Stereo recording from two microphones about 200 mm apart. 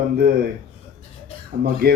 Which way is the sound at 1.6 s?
50° right (ahead or behind).